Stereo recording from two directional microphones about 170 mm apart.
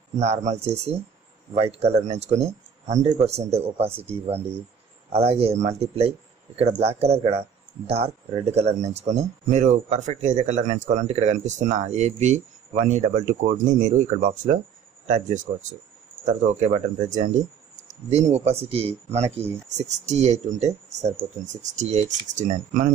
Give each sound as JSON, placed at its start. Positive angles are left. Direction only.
{"t": 0.2, "sound": "speech", "side_deg": -40}